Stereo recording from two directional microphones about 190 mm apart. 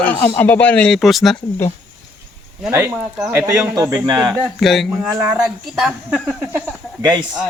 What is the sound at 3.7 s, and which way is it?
Speech, 15° right (ahead or behind).